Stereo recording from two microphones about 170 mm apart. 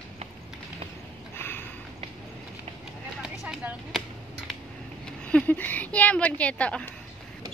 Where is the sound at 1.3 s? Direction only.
15° left (ahead or behind).